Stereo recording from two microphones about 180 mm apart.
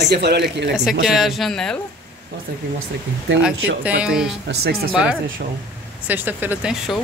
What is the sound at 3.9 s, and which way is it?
Speech, 5° right (ahead or behind).